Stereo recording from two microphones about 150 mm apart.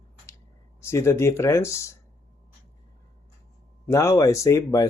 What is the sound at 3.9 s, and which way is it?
Speech, 20° left (ahead or behind).